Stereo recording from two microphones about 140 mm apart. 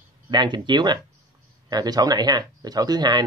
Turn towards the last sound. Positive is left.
turn(degrees=-30)  # may be behind; listen again after turning